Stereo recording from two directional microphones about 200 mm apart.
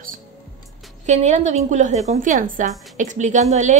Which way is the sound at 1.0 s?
35° right (ahead or behind).